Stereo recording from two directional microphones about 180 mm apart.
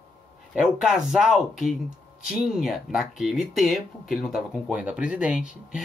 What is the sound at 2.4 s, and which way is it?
Speech, centre (ahead or behind).